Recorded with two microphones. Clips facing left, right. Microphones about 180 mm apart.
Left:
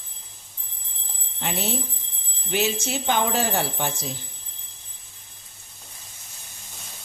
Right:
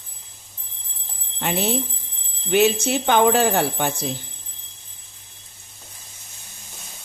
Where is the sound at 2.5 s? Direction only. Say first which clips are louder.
Right 7 dB; 60° right (ahead or behind).